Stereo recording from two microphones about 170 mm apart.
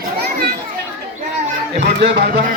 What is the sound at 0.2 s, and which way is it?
Children playing, 70° right (ahead or behind).